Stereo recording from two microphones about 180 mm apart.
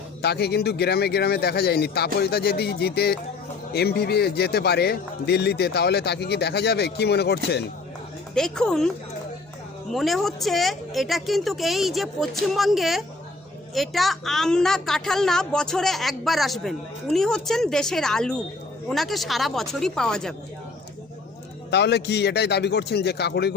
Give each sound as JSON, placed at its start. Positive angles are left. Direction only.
{"t": 0.2, "sound": "a man's voice", "side_deg": 65}
{"t": 8.4, "sound": "a woman's voice", "side_deg": 5}
{"t": 9.9, "sound": "a woman's voice", "side_deg": 0}
{"t": 21.7, "sound": "a man's voice", "side_deg": 70}